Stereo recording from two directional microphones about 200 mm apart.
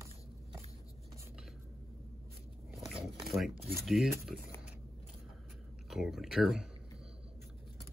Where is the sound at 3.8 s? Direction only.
Centre (ahead or behind).